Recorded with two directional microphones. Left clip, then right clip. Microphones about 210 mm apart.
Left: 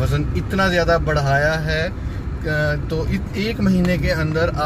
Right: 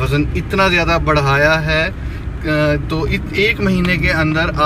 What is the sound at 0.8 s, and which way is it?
Speech, 5° right (ahead or behind).